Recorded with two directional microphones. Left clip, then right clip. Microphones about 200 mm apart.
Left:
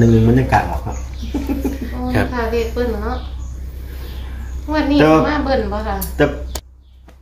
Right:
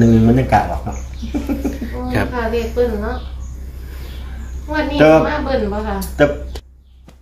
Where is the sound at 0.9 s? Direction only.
30° right (ahead or behind).